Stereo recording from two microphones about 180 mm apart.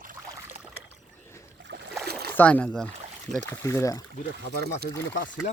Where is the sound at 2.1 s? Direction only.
60° right (ahead or behind).